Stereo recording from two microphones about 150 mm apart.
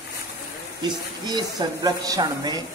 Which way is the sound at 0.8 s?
30° right (ahead or behind).